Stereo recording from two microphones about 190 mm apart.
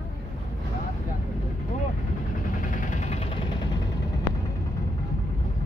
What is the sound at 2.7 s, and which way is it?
Vehicle, 40° left (ahead or behind).